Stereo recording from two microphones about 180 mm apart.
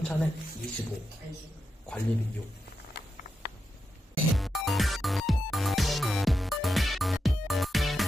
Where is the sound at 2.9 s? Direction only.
60° left (ahead or behind).